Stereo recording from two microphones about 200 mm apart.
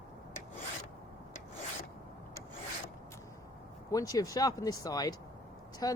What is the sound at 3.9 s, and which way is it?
Speech, 15° left (ahead or behind).